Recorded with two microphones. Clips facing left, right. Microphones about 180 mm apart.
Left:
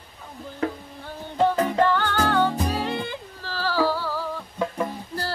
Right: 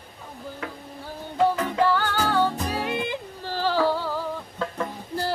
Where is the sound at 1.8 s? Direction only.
5° right (ahead or behind).